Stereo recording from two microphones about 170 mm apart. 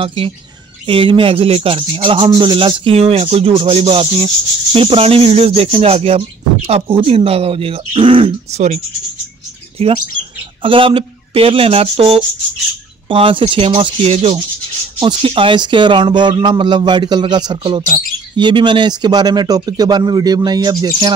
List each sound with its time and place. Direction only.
0.0 s speech: 30° right (ahead or behind)